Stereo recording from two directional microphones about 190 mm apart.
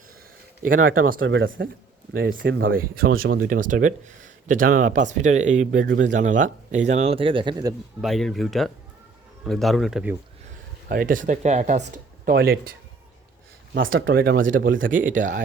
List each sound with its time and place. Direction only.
0.7 s speech: 50° right (ahead or behind)
1.2 s speech: 85° right
2.1 s speech: 50° right (ahead or behind); by 7.7 s 25° right (ahead or behind)
8.0 s speech: centre (ahead or behind)
10.8 s speech: 50° right (ahead or behind)
11.9 s speech: 50° right (ahead or behind)
13.7 s speech: 90° right
14.0 s speech: 55° right (ahead or behind)